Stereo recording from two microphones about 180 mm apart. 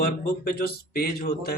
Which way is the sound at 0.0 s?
60° left (ahead or behind).